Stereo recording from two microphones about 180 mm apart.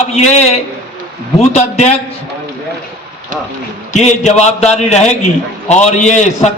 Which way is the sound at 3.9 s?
40° left (ahead or behind).